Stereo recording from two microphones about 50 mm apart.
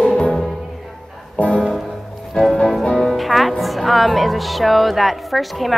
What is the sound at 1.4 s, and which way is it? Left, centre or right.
Music, left.